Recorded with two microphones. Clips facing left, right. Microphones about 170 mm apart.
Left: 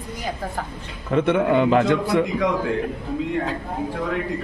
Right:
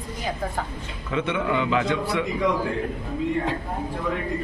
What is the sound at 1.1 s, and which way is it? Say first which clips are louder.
A man's voice: left 6 dB; 50° left (ahead or behind).